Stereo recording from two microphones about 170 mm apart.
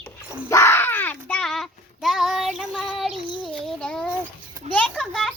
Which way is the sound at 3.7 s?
5° left (ahead or behind).